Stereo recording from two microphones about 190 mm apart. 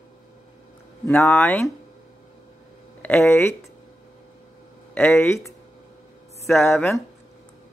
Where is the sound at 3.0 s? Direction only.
15° left (ahead or behind).